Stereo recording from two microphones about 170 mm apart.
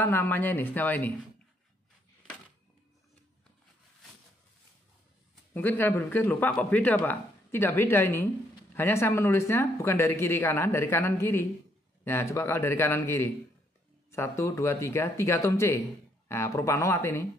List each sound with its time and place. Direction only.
0.0 s speech: 10° left (ahead or behind)
5.5 s speech: 10° left (ahead or behind)